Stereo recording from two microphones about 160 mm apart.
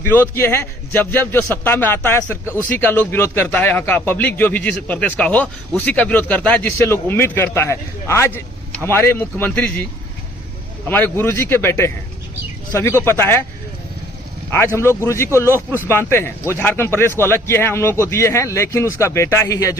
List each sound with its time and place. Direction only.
0.0 s speech: 15° left (ahead or behind)
10.8 s speech: 10° left (ahead or behind)
14.8 s speech: 15° left (ahead or behind)